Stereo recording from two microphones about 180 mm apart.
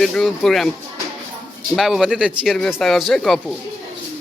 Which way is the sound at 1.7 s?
Centre (ahead or behind).